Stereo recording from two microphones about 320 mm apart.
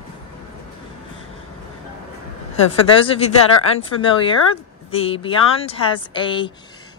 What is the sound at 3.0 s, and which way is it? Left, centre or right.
Speech, centre.